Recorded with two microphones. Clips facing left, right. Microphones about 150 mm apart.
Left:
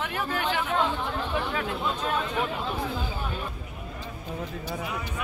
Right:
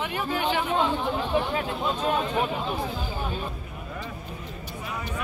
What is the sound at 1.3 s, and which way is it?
Speech, 25° right (ahead or behind).